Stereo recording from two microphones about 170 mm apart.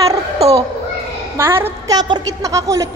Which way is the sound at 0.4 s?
35° right (ahead or behind).